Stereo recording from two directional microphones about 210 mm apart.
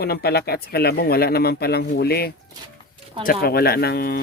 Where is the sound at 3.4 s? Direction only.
45° left (ahead or behind).